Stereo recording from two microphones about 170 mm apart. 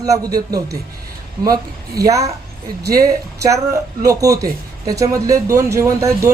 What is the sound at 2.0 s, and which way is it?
A man's voice, 20° right (ahead or behind).